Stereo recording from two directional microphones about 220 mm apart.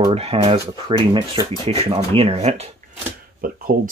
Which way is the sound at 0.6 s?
15° right (ahead or behind).